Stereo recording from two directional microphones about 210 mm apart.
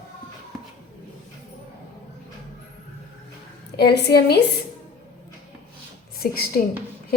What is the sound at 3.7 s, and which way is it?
Speech, 50° left (ahead or behind).